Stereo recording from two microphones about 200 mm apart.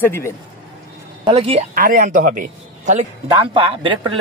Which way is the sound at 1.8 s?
45° right (ahead or behind).